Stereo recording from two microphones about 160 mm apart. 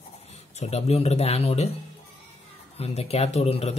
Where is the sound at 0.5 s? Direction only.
40° left (ahead or behind).